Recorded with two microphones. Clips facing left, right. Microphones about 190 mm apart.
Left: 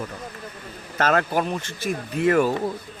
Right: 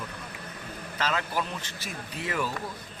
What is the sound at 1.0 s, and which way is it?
Speech, 55° left (ahead or behind).